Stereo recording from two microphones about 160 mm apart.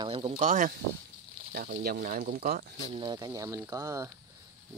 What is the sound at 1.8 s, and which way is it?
Speech, 70° right (ahead or behind).